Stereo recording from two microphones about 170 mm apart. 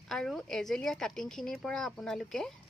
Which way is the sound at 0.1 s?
Centre (ahead or behind).